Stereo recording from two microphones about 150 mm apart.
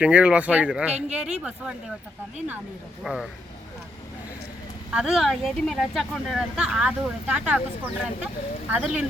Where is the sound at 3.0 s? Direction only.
5° right (ahead or behind).